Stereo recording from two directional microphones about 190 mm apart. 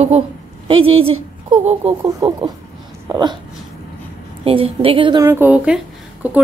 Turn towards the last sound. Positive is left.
turn(degrees=-10)  # may be behind; listen again after turning